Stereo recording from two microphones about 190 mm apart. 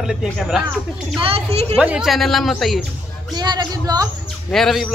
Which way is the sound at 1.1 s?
30° right (ahead or behind).